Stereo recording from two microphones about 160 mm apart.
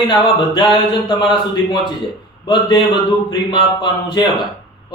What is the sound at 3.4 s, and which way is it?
Speech, 30° left (ahead or behind).